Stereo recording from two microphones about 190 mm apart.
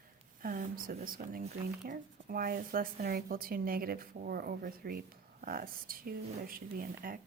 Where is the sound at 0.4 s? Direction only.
45° right (ahead or behind).